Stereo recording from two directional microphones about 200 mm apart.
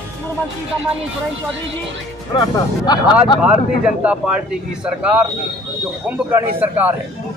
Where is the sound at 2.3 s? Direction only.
20° left (ahead or behind).